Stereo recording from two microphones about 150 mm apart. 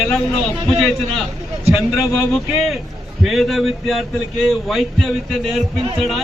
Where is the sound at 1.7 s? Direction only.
Centre (ahead or behind).